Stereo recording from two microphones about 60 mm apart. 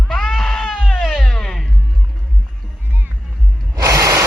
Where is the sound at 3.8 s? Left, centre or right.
Right.